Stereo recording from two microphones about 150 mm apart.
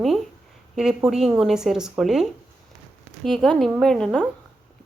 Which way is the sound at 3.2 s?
Centre (ahead or behind).